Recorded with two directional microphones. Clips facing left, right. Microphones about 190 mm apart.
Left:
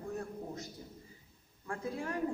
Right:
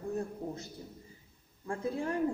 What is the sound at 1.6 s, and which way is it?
Speech, 25° right (ahead or behind).